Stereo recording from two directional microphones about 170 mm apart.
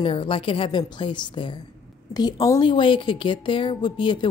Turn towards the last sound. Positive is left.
turn(degrees=30)  # may be behind; listen again after turning